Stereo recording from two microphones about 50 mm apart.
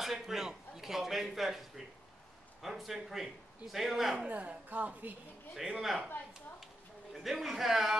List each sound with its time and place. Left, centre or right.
0.0 s a man's voice: centre
4.3 s a woman's voice: right
5.6 s a man's voice: centre
7.2 s a man's voice: centre